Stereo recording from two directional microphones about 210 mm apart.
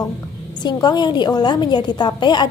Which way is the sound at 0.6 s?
20° left (ahead or behind).